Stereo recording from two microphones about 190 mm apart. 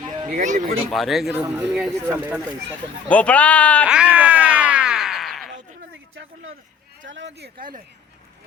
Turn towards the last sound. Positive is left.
turn(degrees=-45)  # may be behind; listen again after turning